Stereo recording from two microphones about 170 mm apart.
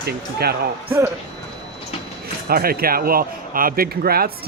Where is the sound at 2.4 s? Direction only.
60° right (ahead or behind).